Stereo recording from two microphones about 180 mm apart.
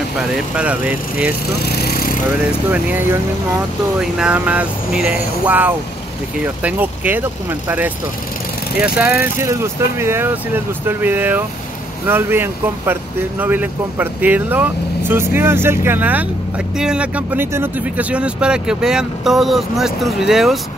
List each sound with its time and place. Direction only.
0.6 s speech: 5° right (ahead or behind)
1.9 s a sound: 55° left (ahead or behind)
2.7 s speech: 10° right (ahead or behind)